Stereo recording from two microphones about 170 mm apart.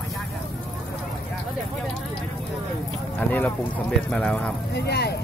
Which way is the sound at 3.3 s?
10° left (ahead or behind).